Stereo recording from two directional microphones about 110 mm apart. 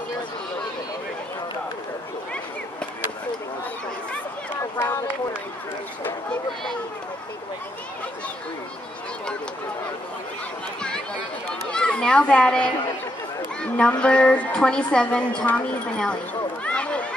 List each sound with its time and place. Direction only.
4.7 s run: 20° left (ahead or behind)
11.7 s a child's voice: 10° left (ahead or behind)
16.6 s run: 10° left (ahead or behind)